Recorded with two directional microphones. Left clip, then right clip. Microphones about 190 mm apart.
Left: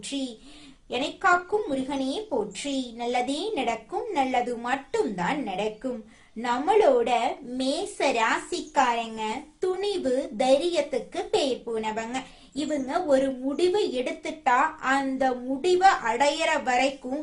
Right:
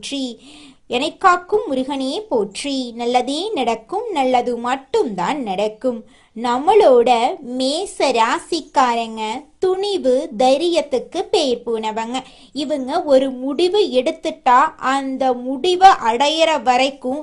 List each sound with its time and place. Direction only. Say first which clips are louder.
0.9 s a woman's voice: right 8 dB; 40° right (ahead or behind)